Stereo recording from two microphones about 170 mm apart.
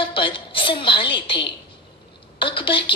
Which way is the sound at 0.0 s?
30° left (ahead or behind).